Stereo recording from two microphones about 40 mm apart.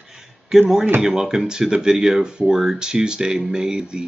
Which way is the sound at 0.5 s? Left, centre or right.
Centre.